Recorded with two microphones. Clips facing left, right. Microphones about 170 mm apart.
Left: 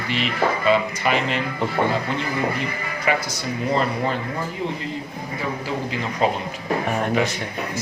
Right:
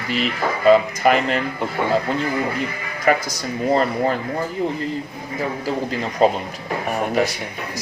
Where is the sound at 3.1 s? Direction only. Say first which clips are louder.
Right 4 dB; 45° right (ahead or behind).